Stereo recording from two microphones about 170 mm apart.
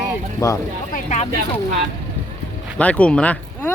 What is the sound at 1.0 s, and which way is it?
Speech, 45° left (ahead or behind).